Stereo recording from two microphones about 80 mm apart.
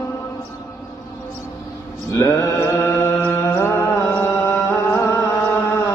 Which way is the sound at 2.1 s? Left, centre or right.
Left.